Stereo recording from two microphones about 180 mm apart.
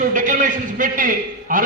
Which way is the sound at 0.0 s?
45° right (ahead or behind).